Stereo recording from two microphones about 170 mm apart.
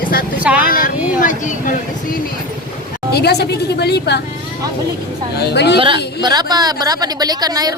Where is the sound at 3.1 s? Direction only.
70° left (ahead or behind).